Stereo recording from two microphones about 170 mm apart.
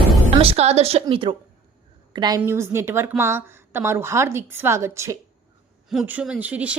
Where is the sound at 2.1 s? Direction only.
25° right (ahead or behind).